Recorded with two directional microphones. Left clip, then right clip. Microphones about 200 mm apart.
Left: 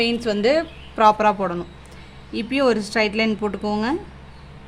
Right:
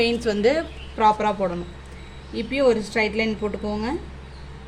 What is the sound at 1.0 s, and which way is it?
A woman's voice, 30° left (ahead or behind).